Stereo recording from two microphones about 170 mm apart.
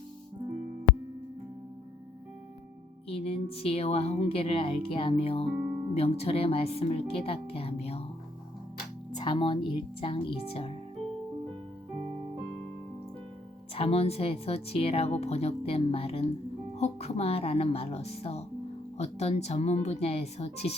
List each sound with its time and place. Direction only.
3.1 s speech: 35° left (ahead or behind)
9.1 s speech: 25° left (ahead or behind)
13.7 s speech: 35° left (ahead or behind)